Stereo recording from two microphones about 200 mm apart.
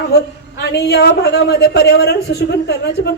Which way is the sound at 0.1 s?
55° left (ahead or behind).